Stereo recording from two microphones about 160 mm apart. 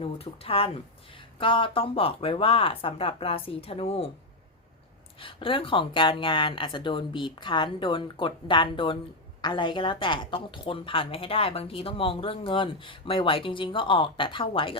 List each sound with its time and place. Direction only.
0.0 s speech: 35° left (ahead or behind)
5.2 s speech: 35° left (ahead or behind)